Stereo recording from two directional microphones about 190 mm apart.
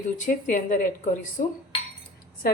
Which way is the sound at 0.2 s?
45° left (ahead or behind).